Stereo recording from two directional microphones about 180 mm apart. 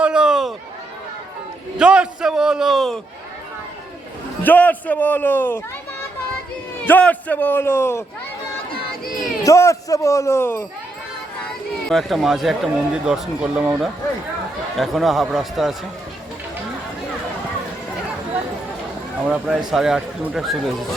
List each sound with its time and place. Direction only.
0.0 s run: 5° right (ahead or behind)
1.8 s speech: 5° right (ahead or behind)
4.4 s speech: 10° left (ahead or behind)
6.8 s speech: 10° left (ahead or behind)
9.4 s speech: 15° left (ahead or behind)
11.9 s speech: centre (ahead or behind)
19.3 s speech: 5° right (ahead or behind)